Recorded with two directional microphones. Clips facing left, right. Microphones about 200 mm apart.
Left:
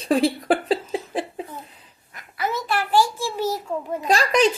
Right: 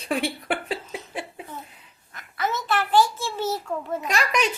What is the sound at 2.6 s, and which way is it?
A child's voice, 10° left (ahead or behind).